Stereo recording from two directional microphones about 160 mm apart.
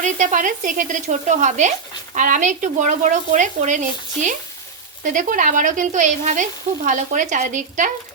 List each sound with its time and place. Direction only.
0.0 s speech: 50° right (ahead or behind)